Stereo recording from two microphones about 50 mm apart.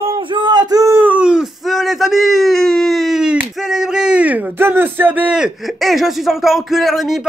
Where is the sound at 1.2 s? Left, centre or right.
Centre.